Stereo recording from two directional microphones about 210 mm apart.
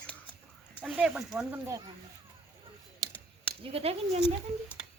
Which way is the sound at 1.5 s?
15° right (ahead or behind).